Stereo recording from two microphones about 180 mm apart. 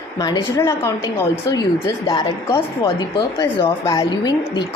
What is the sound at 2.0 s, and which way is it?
A woman's voice, 30° left (ahead or behind).